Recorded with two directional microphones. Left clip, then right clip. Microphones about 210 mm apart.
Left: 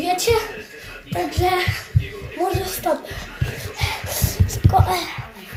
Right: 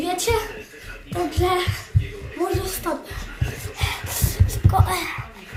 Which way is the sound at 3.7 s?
35° right (ahead or behind).